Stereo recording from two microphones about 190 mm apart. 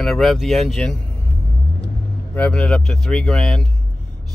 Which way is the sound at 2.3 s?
5° left (ahead or behind).